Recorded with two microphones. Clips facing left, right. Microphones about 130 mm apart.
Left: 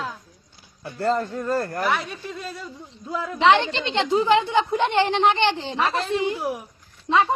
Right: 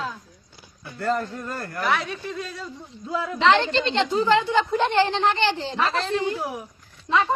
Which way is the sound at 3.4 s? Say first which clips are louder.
Left 1 dB; 15° left (ahead or behind).